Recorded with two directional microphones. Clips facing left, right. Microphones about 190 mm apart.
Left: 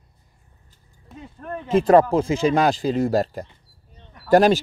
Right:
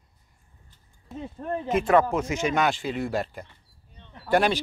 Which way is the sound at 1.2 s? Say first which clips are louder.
Right 2 dB; 25° right (ahead or behind).